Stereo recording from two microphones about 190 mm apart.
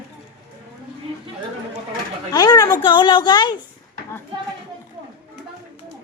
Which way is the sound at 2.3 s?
20° left (ahead or behind).